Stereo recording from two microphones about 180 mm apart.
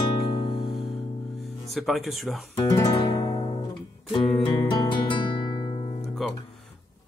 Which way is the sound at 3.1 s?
20° left (ahead or behind).